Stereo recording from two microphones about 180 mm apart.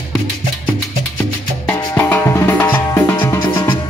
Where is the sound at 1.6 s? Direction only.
10° left (ahead or behind).